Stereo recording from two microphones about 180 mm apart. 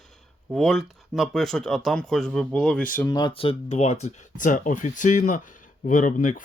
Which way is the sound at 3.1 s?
25° left (ahead or behind).